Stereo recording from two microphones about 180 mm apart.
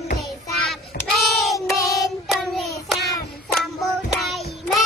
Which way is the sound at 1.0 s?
55° left (ahead or behind).